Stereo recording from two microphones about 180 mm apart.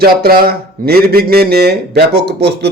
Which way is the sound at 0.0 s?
60° right (ahead or behind).